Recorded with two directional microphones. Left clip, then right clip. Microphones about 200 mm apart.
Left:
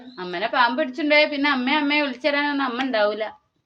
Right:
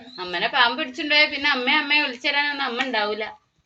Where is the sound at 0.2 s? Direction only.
35° left (ahead or behind).